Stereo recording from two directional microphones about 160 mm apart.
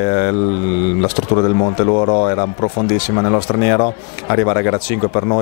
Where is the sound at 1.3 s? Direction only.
25° left (ahead or behind).